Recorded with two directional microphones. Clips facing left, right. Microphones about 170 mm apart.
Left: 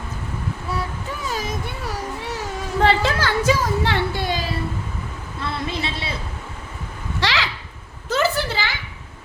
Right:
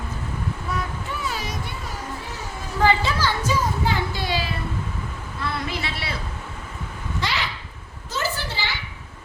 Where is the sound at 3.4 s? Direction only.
85° left; by 4.4 s 50° left (ahead or behind).